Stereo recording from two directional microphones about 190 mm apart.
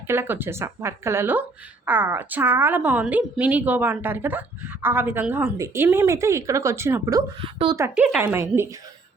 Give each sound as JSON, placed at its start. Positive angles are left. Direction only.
{"t": 0.1, "sound": "speech", "side_deg": -10}
{"t": 7.3, "sound": "speech", "side_deg": -25}
{"t": 7.8, "sound": "speech", "side_deg": -10}